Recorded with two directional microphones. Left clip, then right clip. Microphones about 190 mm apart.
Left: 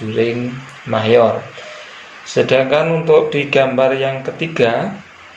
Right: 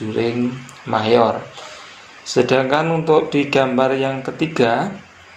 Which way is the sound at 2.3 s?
40° right (ahead or behind).